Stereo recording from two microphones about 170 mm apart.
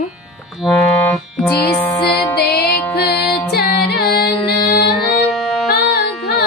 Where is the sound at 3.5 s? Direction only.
70° left (ahead or behind).